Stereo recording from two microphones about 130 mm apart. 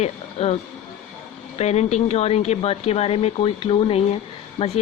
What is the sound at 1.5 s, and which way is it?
Speech, 55° left (ahead or behind).